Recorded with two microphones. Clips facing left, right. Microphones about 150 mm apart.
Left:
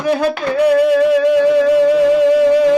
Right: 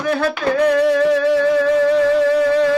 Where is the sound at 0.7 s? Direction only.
10° left (ahead or behind).